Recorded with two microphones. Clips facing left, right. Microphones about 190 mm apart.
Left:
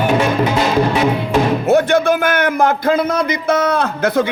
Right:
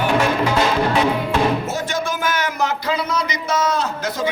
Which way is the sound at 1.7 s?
60° left (ahead or behind).